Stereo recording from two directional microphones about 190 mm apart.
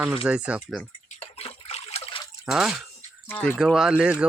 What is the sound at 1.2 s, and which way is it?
Water, 30° left (ahead or behind).